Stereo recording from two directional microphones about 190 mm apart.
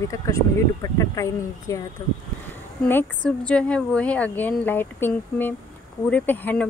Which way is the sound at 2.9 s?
5° left (ahead or behind).